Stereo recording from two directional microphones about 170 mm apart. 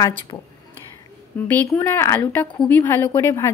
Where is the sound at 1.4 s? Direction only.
10° left (ahead or behind).